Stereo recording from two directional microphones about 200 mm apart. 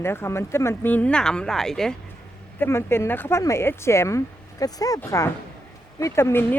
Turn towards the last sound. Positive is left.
turn(degrees=10)  # may be behind; listen again after turning